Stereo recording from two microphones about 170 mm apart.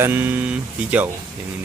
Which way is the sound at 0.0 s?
10° right (ahead or behind).